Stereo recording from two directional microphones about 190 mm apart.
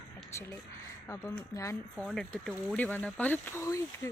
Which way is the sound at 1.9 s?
5° left (ahead or behind).